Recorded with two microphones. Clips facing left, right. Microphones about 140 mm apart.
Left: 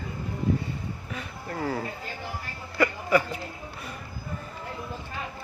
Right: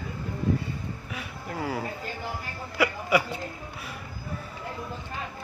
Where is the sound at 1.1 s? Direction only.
5° right (ahead or behind).